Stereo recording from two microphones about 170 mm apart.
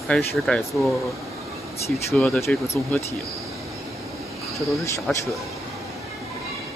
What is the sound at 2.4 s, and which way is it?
Speech, 15° left (ahead or behind).